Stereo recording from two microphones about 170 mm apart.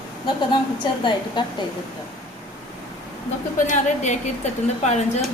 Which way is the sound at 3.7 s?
45° left (ahead or behind).